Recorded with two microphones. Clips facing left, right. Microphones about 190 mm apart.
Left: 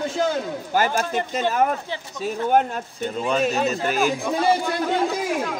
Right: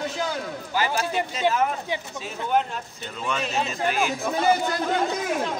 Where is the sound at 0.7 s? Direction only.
45° left (ahead or behind).